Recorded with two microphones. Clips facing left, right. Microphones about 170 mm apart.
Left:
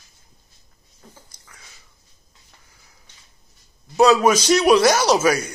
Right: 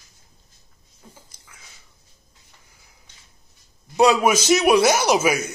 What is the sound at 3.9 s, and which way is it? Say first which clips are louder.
A man's voice: left 2 dB; 15° right (ahead or behind).